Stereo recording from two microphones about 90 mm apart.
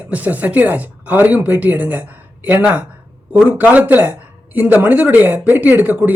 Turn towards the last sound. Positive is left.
turn(degrees=-20)  # may be behind; listen again after turning